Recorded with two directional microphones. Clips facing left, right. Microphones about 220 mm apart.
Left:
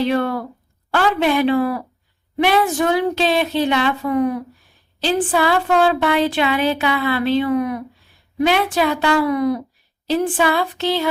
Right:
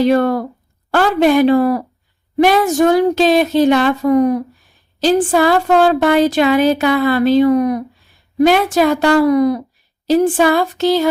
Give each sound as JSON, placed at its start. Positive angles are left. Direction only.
{"t": 0.0, "sound": "a woman's voice", "side_deg": -45}